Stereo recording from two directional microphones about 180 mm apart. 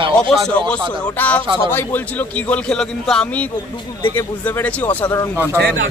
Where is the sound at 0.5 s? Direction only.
5° left (ahead or behind).